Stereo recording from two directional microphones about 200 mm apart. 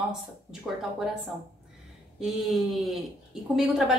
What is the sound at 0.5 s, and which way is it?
Speech, 5° right (ahead or behind).